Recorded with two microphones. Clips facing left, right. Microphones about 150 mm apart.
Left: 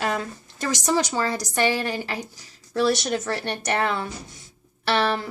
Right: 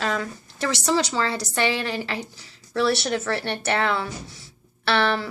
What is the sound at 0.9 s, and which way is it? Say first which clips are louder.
A woman's voice: even; 15° left (ahead or behind).